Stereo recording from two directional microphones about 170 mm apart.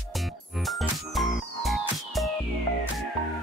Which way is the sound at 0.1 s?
Centre (ahead or behind).